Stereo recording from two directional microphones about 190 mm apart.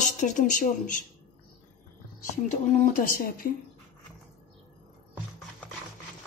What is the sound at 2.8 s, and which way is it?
Speech, 45° left (ahead or behind).